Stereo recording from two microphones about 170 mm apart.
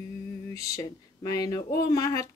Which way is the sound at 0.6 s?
20° left (ahead or behind).